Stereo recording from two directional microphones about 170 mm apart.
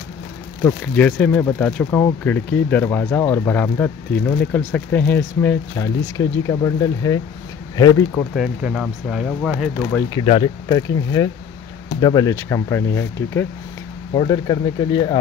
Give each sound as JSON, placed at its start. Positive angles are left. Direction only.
{"t": 0.7, "sound": "speech", "side_deg": 10}
{"t": 8.4, "sound": "speech", "side_deg": 0}
{"t": 10.2, "sound": "speech", "side_deg": 35}
{"t": 10.7, "sound": "speech", "side_deg": 20}
{"t": 14.1, "sound": "speech", "side_deg": 25}